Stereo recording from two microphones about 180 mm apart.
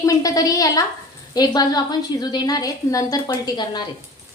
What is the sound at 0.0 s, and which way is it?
A woman's voice, 20° left (ahead or behind).